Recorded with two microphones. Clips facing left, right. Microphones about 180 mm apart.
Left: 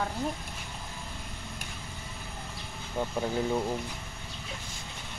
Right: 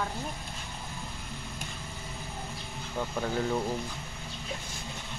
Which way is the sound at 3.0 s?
15° left (ahead or behind).